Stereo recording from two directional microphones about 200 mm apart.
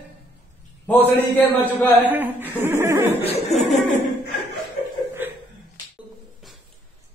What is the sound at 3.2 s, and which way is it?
Speech, 30° left (ahead or behind).